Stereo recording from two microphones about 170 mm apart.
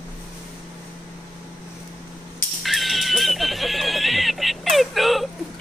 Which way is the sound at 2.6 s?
Centre (ahead or behind).